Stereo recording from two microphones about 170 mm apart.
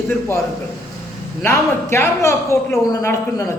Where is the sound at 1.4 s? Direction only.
15° left (ahead or behind).